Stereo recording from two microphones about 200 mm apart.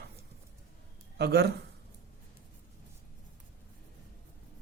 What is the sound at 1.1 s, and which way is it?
Speech, 55° right (ahead or behind).